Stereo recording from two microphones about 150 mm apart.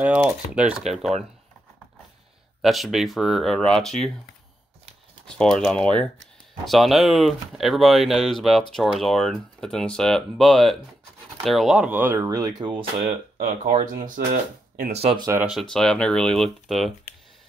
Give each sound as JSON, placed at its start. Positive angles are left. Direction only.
{"t": 0.0, "sound": "speech", "side_deg": -10}
{"t": 2.6, "sound": "speech", "side_deg": 0}
{"t": 5.2, "sound": "speech", "side_deg": 5}
{"t": 13.7, "sound": "speech", "side_deg": -60}
{"t": 15.5, "sound": "speech", "side_deg": 5}